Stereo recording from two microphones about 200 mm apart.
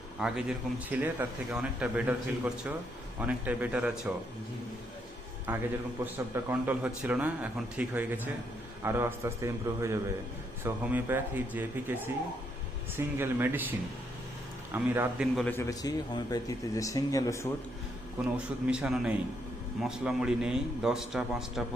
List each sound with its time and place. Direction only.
0.2 s a man's voice: 5° right (ahead or behind)
5.5 s speech: 10° right (ahead or behind)
15.4 s speech: 10° left (ahead or behind)
18.7 s a man's voice: 5° right (ahead or behind)